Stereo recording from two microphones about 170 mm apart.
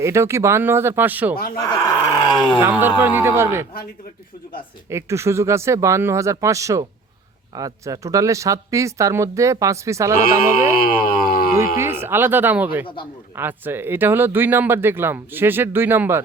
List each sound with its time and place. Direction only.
0.0 s speech: 15° right (ahead or behind)
1.5 s speech: 20° left (ahead or behind)
2.6 s speech: 10° right (ahead or behind)
4.9 s speech: 15° right (ahead or behind)
10.8 s a sound: 55° left (ahead or behind)
11.8 s speech: 15° right (ahead or behind)